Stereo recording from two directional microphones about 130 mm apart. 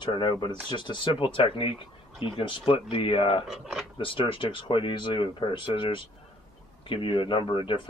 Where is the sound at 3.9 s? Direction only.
40° left (ahead or behind).